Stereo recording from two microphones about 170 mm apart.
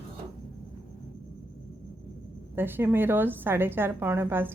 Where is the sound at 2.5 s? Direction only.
10° right (ahead or behind).